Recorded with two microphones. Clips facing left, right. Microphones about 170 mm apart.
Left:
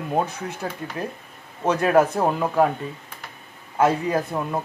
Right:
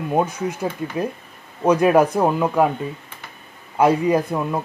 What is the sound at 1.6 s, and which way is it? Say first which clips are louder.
Speech: right 3 dB; 15° right (ahead or behind).